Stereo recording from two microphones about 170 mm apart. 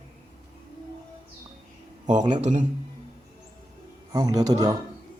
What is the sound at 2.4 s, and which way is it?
Speech, 45° right (ahead or behind).